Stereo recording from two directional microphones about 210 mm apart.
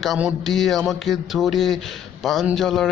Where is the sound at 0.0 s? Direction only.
5° right (ahead or behind).